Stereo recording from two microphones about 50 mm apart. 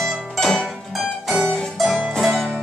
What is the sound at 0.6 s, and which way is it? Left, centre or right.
Music, centre.